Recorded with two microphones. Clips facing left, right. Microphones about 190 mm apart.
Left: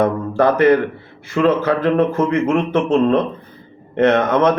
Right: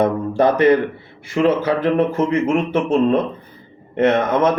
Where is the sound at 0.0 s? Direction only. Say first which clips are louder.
Even; 20° right (ahead or behind).